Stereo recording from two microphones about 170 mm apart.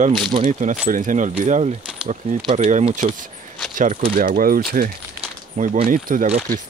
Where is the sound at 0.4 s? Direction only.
45° right (ahead or behind).